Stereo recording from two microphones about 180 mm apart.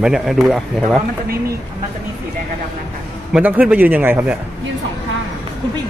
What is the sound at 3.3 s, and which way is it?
Speech, 10° right (ahead or behind).